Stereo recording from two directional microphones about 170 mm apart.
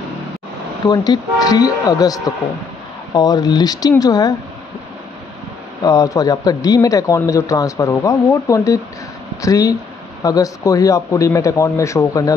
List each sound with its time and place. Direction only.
0.8 s a man's voice: 25° left (ahead or behind)
5.9 s a man's voice: 20° left (ahead or behind)